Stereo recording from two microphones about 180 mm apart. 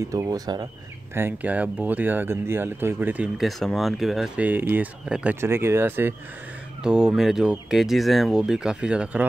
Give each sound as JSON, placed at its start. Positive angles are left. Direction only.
{"t": 0.0, "sound": "speech", "side_deg": -20}
{"t": 1.1, "sound": "speech", "side_deg": -10}